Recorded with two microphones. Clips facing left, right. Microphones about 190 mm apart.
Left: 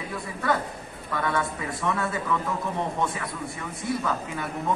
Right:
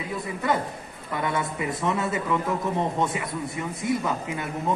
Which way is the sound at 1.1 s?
20° right (ahead or behind).